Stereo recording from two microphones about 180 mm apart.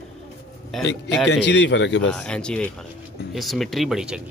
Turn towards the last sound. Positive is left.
turn(degrees=-5)  # may be behind; listen again after turning